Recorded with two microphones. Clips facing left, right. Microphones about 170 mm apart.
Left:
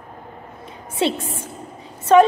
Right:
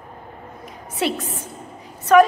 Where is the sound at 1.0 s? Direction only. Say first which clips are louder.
Left 2 dB; 25° left (ahead or behind).